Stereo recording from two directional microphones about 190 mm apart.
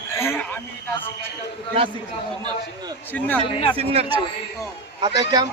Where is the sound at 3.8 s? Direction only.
30° right (ahead or behind).